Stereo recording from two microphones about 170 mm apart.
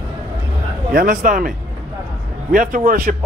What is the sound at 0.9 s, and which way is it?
Speech, 50° right (ahead or behind).